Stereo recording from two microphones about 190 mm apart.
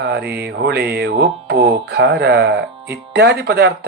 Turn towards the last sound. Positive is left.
turn(degrees=-60)  # may be behind; listen again after turning